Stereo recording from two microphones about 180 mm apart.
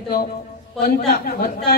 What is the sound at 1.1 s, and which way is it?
Speech, 55° left (ahead or behind).